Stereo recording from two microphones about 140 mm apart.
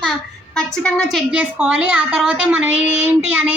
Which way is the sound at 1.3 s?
10° right (ahead or behind).